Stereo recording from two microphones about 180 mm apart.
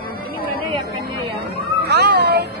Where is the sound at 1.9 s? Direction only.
65° right (ahead or behind).